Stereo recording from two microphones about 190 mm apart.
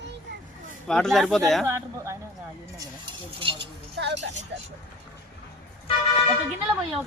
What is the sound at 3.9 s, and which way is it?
Speech, 70° right (ahead or behind).